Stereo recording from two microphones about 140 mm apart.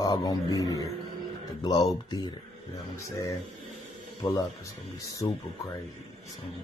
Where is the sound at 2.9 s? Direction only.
20° left (ahead or behind).